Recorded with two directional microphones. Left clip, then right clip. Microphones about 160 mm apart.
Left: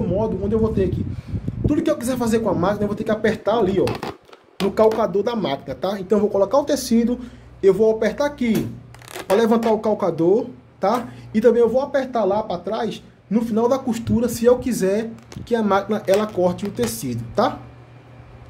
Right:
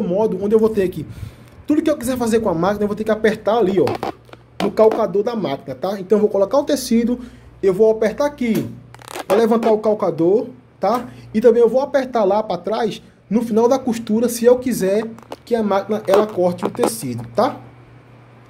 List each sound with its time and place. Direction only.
0.0 s a man's voice: 30° right (ahead or behind)
4.7 s speech: 20° right (ahead or behind)